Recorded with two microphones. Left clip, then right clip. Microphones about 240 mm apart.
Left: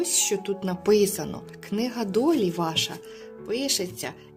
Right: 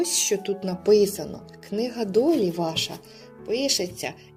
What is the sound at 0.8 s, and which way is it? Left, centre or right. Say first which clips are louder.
Speech: right 2 dB; left.